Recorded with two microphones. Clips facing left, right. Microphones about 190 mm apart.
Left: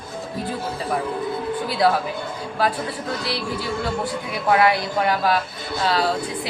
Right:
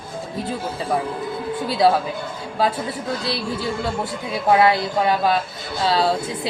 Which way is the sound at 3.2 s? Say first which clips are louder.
Right 2 dB; 25° right (ahead or behind).